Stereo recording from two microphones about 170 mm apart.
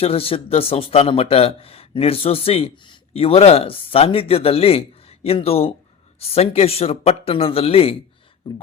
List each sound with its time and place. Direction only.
0.0 s speech: 35° left (ahead or behind)